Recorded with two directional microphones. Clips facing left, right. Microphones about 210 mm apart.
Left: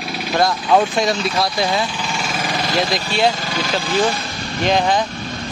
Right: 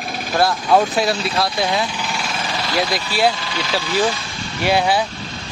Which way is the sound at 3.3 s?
45° left (ahead or behind).